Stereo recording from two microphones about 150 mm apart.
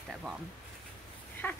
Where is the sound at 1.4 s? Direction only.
10° left (ahead or behind).